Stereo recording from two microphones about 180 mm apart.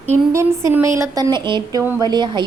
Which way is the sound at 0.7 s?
15° right (ahead or behind).